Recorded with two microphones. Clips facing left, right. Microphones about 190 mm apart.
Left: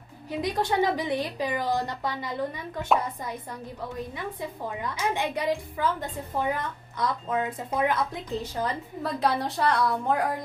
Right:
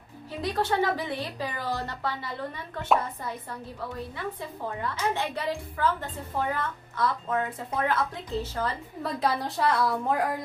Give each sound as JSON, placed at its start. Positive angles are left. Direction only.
{"t": 0.3, "sound": "a woman's voice", "side_deg": 15}
{"t": 4.2, "sound": "a woman's voice", "side_deg": 15}
{"t": 9.0, "sound": "a woman's voice", "side_deg": 0}